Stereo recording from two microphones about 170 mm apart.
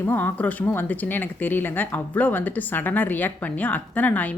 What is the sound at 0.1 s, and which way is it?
Speech, 10° left (ahead or behind).